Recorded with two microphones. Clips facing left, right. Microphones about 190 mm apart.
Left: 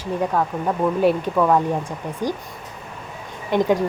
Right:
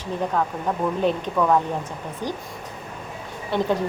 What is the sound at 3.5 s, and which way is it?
Speech, 15° left (ahead or behind).